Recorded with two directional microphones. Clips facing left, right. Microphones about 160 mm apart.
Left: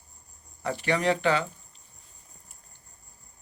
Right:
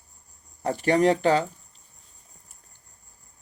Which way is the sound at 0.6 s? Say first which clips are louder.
Right 6 dB; 40° right (ahead or behind).